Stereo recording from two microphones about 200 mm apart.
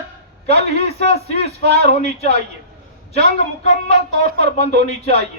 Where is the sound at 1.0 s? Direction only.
30° left (ahead or behind).